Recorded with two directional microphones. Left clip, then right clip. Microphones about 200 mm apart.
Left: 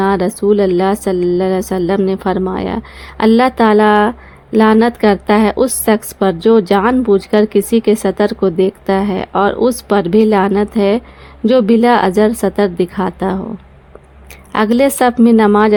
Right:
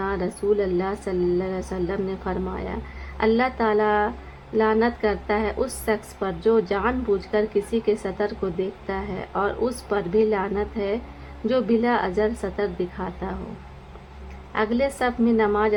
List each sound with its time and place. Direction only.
0.0 s a woman's voice: 50° left (ahead or behind)
14.5 s a woman's voice: 55° left (ahead or behind)